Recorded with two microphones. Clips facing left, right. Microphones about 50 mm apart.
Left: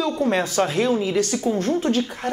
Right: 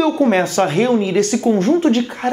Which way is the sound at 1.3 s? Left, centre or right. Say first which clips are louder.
Right 7 dB; right.